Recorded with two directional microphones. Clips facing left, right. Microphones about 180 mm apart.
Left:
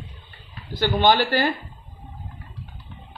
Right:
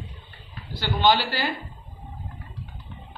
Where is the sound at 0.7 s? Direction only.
50° left (ahead or behind).